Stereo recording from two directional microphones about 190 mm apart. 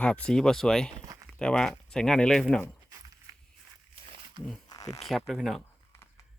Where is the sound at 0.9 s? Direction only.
20° right (ahead or behind).